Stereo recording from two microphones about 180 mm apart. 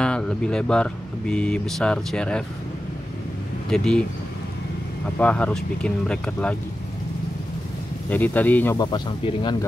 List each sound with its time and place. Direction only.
0.0 s speech: 5° left (ahead or behind)
3.7 s speech: 5° left (ahead or behind)
5.2 s speech: 5° left (ahead or behind)
8.1 s speech: 10° left (ahead or behind)
8.7 s speech: 25° left (ahead or behind)